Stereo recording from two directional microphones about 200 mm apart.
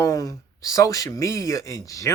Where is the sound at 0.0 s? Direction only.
15° left (ahead or behind).